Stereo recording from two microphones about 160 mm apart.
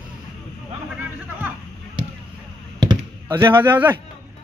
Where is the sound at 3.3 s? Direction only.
15° right (ahead or behind).